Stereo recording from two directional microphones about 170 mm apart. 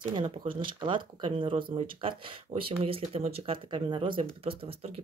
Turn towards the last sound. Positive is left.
turn(degrees=-35)  # may be behind; listen again after turning